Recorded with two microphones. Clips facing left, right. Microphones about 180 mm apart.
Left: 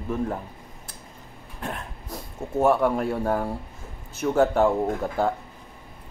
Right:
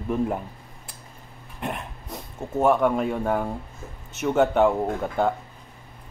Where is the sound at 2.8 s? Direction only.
Centre (ahead or behind).